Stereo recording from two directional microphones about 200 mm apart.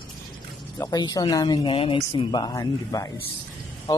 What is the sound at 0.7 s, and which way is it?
Speech, 20° left (ahead or behind).